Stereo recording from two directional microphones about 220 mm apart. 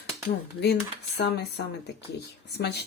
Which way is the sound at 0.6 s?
50° left (ahead or behind).